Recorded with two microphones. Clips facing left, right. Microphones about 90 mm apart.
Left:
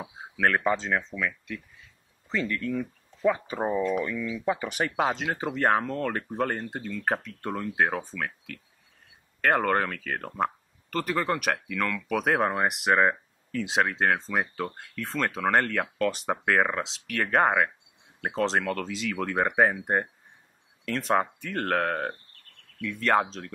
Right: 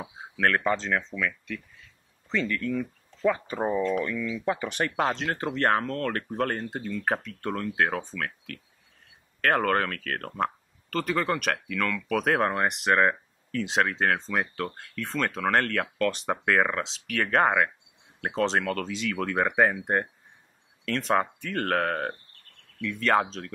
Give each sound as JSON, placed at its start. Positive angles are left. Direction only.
{"t": 0.0, "sound": "speech", "side_deg": 5}